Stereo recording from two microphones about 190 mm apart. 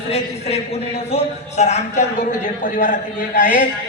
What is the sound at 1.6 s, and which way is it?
A man's voice, 35° left (ahead or behind).